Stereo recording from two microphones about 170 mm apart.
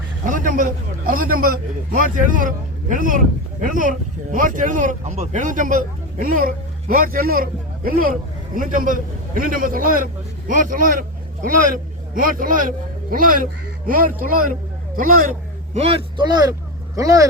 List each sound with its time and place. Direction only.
0.3 s a man's voice: 50° right (ahead or behind)
15.8 s speech: 25° right (ahead or behind)